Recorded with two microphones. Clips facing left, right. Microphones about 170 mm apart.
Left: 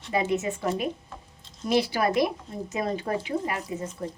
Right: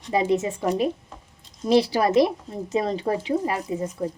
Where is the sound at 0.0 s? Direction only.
35° right (ahead or behind).